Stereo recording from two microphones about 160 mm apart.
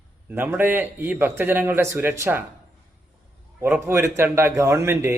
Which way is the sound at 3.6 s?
15° right (ahead or behind).